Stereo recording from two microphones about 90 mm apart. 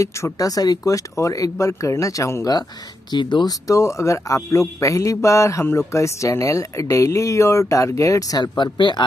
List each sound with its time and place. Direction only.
0.0 s speech: 40° left (ahead or behind)
3.1 s speech: 55° left (ahead or behind)
3.6 s speech: 35° left (ahead or behind)
8.5 s speech: 55° left (ahead or behind)